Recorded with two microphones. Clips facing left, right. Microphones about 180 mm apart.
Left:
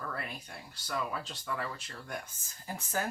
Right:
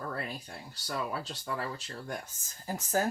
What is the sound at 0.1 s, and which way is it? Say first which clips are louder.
Speech: right 3 dB; 35° right (ahead or behind).